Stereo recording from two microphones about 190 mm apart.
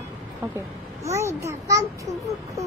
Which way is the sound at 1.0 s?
15° right (ahead or behind).